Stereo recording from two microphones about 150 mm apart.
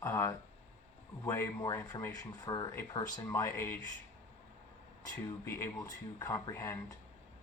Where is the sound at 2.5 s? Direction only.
30° left (ahead or behind).